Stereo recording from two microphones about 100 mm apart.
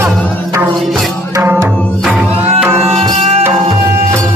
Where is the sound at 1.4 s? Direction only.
20° right (ahead or behind).